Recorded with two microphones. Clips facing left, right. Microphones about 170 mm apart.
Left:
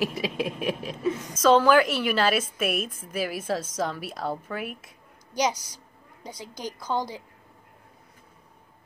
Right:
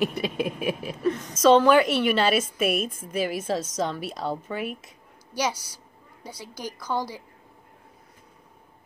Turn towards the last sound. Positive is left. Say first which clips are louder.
# even
turn(degrees=20)  # may be behind; listen again after turning